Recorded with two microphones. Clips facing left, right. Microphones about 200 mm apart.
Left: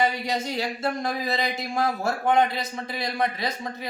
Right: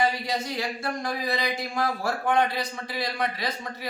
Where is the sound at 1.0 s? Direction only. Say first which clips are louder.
Left 1 dB; 25° left (ahead or behind).